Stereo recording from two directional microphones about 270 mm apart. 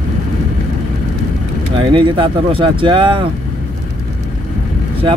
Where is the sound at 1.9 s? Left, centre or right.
Centre.